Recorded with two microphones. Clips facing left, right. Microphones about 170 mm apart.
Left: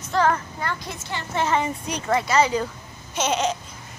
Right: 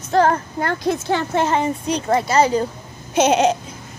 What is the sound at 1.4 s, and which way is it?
A woman's voice, 35° right (ahead or behind).